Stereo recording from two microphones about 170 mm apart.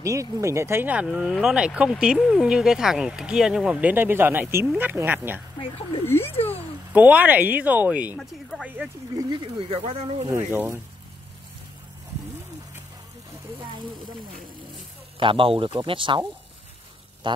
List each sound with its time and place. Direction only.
0.0 s speech: 20° right (ahead or behind)
6.0 s speech: 15° left (ahead or behind)
6.9 s speech: 10° right (ahead or behind)
9.3 s speech: 30° right (ahead or behind)
10.2 s speech: 15° right (ahead or behind)
15.1 s speech: 30° right (ahead or behind)